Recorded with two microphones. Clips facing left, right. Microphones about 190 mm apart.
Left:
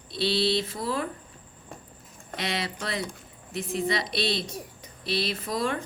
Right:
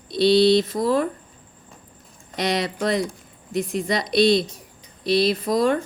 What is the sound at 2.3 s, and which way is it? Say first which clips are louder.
Speech: right 8 dB; 40° right (ahead or behind).